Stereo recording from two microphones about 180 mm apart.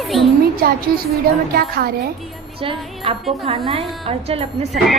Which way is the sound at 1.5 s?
55° right (ahead or behind).